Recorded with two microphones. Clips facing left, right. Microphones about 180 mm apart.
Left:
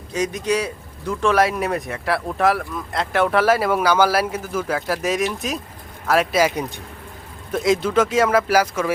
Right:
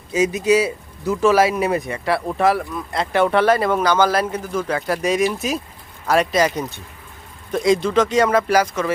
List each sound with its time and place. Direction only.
0.1 s speech: 5° right (ahead or behind)